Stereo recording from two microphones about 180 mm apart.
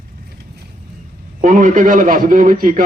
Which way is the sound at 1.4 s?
45° right (ahead or behind).